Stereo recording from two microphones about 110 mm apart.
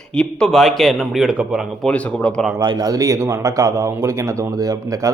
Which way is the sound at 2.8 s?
30° right (ahead or behind).